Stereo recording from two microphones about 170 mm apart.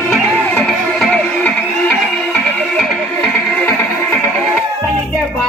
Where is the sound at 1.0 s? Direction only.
5° left (ahead or behind).